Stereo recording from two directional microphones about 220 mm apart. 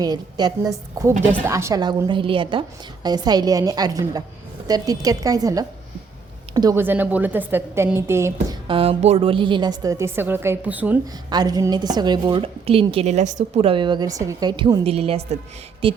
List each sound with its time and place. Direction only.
0.0 s a woman's voice: 20° right (ahead or behind)
8.6 s a woman's voice: 25° right (ahead or behind); by 11.0 s 5° right (ahead or behind)
11.3 s a woman's voice: 20° right (ahead or behind)